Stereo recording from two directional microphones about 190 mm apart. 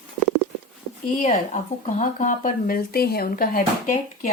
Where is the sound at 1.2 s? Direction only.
40° left (ahead or behind).